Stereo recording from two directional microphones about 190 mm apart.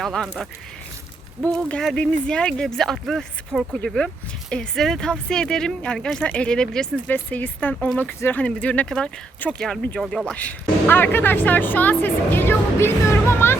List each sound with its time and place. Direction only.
0.0 s speech: centre (ahead or behind)
1.5 s speech: 5° left (ahead or behind)